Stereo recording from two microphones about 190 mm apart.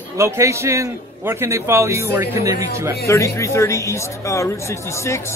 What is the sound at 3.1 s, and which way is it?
Speech, 15° left (ahead or behind).